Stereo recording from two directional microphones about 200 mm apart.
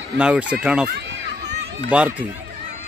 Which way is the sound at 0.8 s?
60° right (ahead or behind).